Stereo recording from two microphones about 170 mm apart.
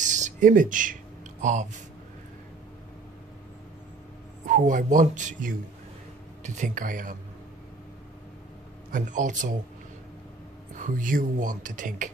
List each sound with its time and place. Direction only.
0.0 s a sound: 45° right (ahead or behind)
1.4 s speech: 45° right (ahead or behind)
4.5 s speech: 50° right (ahead or behind)
8.9 s speech: 50° right (ahead or behind)
10.8 s speech: 50° right (ahead or behind)